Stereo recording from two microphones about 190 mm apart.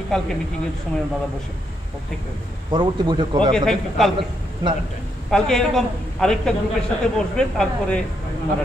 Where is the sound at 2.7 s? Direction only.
25° right (ahead or behind).